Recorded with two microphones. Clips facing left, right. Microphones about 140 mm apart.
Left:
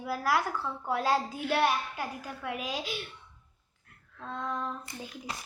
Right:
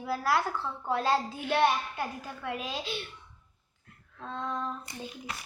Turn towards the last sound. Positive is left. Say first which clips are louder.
# even
turn(degrees=5)  # may be behind; listen again after turning